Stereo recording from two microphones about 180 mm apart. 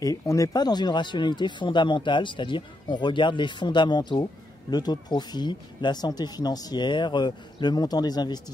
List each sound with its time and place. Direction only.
0.0 s speech: 20° left (ahead or behind)